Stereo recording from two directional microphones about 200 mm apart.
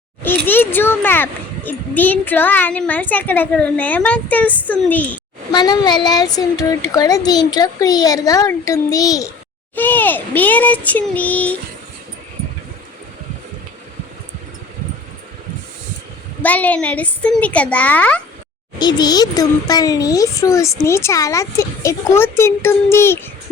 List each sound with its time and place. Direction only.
0.4 s a child's voice: 10° left (ahead or behind)
5.5 s child singing: 20° left (ahead or behind)
6.9 s a child's voice: 20° left (ahead or behind)
16.4 s a child's voice: 10° left (ahead or behind)
18.8 s a child's voice: 20° left (ahead or behind)